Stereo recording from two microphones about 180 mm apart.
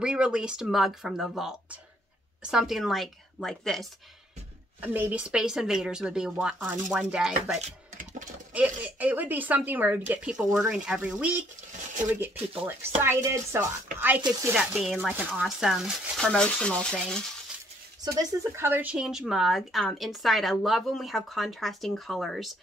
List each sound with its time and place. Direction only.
0.0 s speech: 5° right (ahead or behind)
4.7 s speech: 10° right (ahead or behind)
7.5 s a sound: 40° right (ahead or behind)
8.5 s speech: 10° right (ahead or behind)
18.0 s speech: 20° right (ahead or behind); by 22.6 s centre (ahead or behind)